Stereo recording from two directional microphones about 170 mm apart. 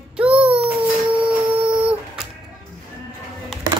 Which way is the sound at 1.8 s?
5° right (ahead or behind).